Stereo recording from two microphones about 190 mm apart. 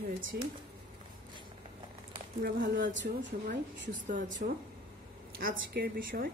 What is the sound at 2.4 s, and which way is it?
Speech, 45° right (ahead or behind).